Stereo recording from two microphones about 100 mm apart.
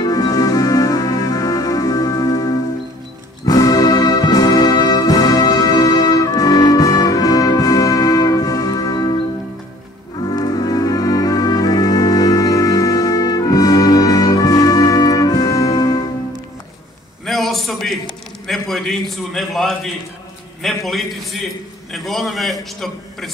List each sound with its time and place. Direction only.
0.0 s music: 40° left (ahead or behind)
3.4 s music: 35° left (ahead or behind)
10.3 s music: 40° left (ahead or behind)
17.3 s a sound: centre (ahead or behind)
18.5 s a man's voice: centre (ahead or behind)